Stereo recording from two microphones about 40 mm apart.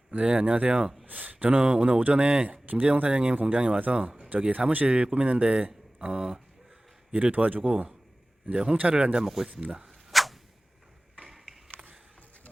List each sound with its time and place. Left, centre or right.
0.1 s speech: right
1.0 s speech: right
1.5 s speech: right
7.1 s speech: right
8.8 s speech: right
9.1 s speech: centre
9.5 s speech: right
9.8 s whip: centre
11.2 s mechanisms: centre